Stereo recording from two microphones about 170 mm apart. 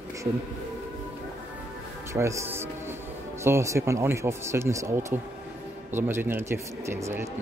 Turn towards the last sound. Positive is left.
turn(degrees=-15)  # may be behind; listen again after turning